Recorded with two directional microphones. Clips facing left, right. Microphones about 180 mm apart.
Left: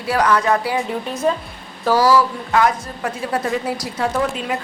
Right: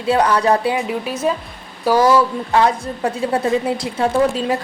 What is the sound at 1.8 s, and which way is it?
A woman's voice, 20° right (ahead or behind).